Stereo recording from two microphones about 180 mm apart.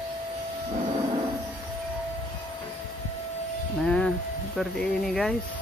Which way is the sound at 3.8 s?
5° left (ahead or behind).